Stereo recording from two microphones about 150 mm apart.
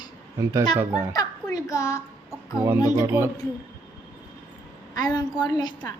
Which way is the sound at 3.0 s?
20° right (ahead or behind).